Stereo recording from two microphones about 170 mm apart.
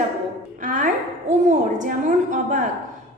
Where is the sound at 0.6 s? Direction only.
50° right (ahead or behind).